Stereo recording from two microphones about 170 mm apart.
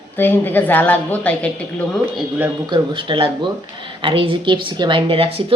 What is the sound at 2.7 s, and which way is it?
Speech, 30° right (ahead or behind).